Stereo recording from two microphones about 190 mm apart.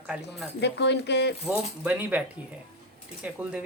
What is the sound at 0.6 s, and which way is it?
Speech, 65° left (ahead or behind).